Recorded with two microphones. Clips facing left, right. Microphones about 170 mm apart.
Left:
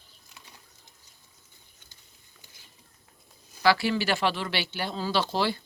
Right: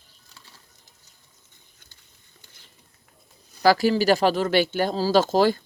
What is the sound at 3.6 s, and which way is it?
Speech, 40° right (ahead or behind).